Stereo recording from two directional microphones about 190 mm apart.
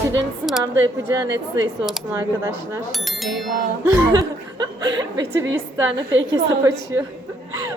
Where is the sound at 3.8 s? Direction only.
15° right (ahead or behind).